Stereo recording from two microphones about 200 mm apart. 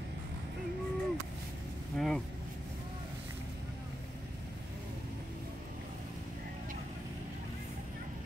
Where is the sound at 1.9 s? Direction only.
Centre (ahead or behind).